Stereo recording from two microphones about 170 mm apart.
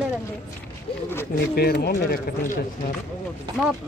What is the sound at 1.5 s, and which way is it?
Speech, 65° left (ahead or behind).